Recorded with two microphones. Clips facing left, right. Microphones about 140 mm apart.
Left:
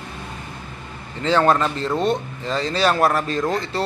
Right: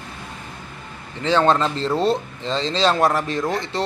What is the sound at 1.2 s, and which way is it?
A man's voice, 20° right (ahead or behind).